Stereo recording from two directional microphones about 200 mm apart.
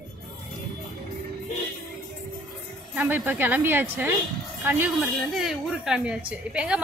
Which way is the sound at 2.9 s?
10° right (ahead or behind).